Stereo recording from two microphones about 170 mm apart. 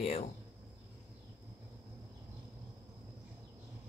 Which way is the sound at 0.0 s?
35° left (ahead or behind).